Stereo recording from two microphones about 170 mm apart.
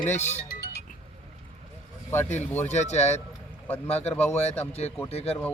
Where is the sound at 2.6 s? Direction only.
40° left (ahead or behind).